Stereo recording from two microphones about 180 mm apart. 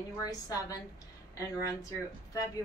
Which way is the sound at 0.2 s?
20° left (ahead or behind).